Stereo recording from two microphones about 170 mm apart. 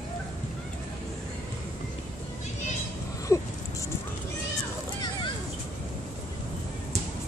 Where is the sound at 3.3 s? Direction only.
15° left (ahead or behind).